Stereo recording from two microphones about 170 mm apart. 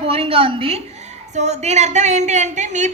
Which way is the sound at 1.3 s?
40° right (ahead or behind).